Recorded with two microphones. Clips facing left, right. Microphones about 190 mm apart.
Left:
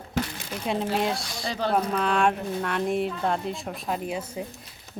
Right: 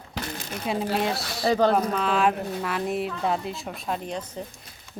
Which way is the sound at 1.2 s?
60° right (ahead or behind).